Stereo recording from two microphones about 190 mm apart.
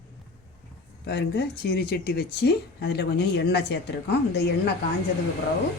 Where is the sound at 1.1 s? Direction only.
60° left (ahead or behind).